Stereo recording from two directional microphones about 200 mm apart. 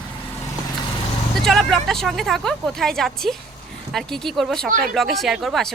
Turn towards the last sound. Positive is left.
turn(degrees=0)  # may be behind; listen again after turning